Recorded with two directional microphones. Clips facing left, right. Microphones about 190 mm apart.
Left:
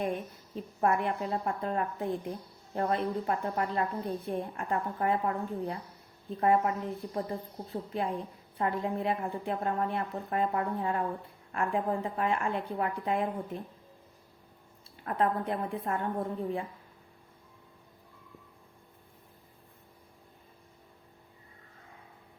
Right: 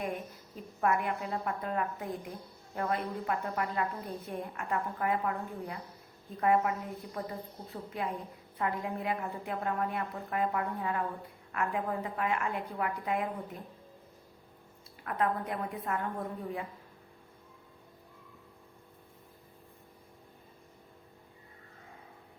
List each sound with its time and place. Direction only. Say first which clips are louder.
0.8 s a woman's voice: left 2 dB; 30° left (ahead or behind)
15.0 s a woman's voice: left 3 dB; 30° left (ahead or behind)